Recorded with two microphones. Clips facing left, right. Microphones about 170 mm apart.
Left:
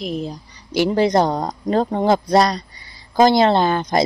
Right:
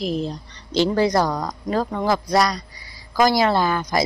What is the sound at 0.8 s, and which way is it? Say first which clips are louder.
Speech: left 3 dB; 20° left (ahead or behind).